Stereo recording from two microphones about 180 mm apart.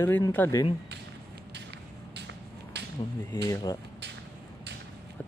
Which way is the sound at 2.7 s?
65° right (ahead or behind).